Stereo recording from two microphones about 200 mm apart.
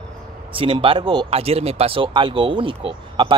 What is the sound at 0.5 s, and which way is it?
Speech, 25° right (ahead or behind).